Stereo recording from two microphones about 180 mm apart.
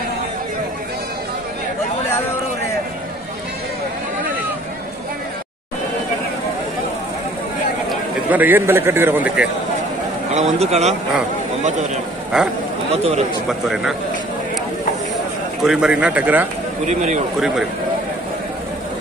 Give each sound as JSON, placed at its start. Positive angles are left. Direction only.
{"t": 7.9, "sound": "a man's voice", "side_deg": -10}
{"t": 10.3, "sound": "a man's voice", "side_deg": -35}
{"t": 12.3, "sound": "a man's voice", "side_deg": -5}
{"t": 15.6, "sound": "speech", "side_deg": -5}
{"t": 16.8, "sound": "a man's voice", "side_deg": -40}